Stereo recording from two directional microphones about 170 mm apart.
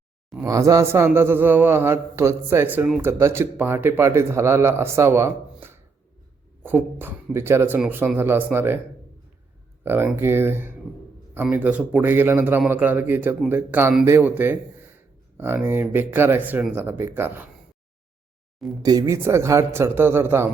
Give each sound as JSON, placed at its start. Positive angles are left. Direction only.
{"t": 0.4, "sound": "speech", "side_deg": -20}
{"t": 9.8, "sound": "speech", "side_deg": -15}
{"t": 18.8, "sound": "speech", "side_deg": -20}